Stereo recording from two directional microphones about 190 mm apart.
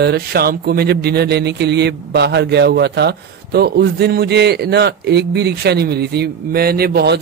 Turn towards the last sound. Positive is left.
turn(degrees=-60)  # may be behind; listen again after turning